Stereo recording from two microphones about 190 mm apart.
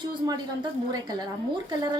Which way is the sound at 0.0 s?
25° right (ahead or behind).